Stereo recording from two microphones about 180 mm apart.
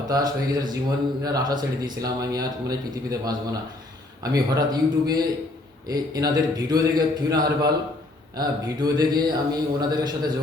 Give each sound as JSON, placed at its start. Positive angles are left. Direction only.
{"t": 0.1, "sound": "speech", "side_deg": -20}